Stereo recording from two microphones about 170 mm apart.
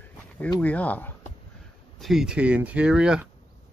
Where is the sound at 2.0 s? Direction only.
Centre (ahead or behind).